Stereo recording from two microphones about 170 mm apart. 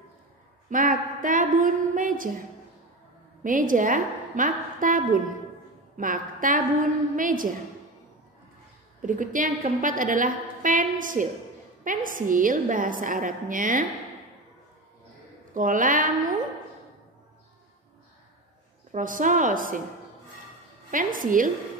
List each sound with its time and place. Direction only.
0.7 s a woman's voice: 50° right (ahead or behind)
3.4 s a woman's voice: 50° right (ahead or behind)
9.0 s a woman's voice: 50° right (ahead or behind)
15.5 s a woman's voice: 50° right (ahead or behind)
18.9 s a woman's voice: 50° right (ahead or behind)
20.9 s a woman's voice: 50° right (ahead or behind)